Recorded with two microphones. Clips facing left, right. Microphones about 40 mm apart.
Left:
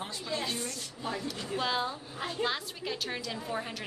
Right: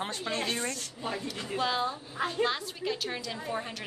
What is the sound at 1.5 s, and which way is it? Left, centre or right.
A woman's voice, centre.